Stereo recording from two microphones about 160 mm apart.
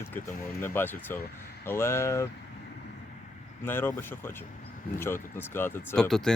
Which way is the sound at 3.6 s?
15° left (ahead or behind).